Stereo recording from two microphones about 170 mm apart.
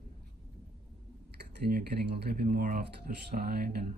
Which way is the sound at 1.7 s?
60° right (ahead or behind).